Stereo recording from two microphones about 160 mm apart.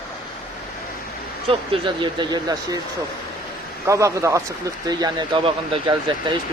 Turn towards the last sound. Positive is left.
turn(degrees=-25)  # may be behind; listen again after turning